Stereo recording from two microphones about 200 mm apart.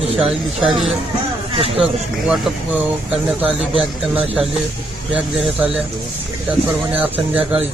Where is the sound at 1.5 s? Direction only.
30° right (ahead or behind).